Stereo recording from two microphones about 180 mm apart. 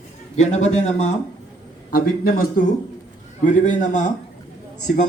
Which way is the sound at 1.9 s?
55° left (ahead or behind).